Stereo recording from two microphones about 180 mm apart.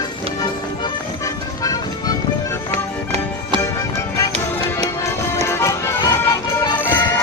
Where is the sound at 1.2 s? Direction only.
20° left (ahead or behind).